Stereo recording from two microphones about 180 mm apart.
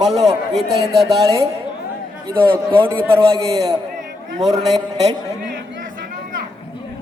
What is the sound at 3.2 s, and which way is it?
Speech, 30° right (ahead or behind).